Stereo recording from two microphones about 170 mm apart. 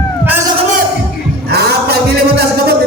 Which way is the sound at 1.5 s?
75° right (ahead or behind).